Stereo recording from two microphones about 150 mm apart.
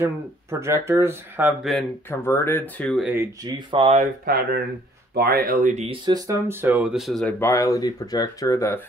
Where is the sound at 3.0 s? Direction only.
10° right (ahead or behind).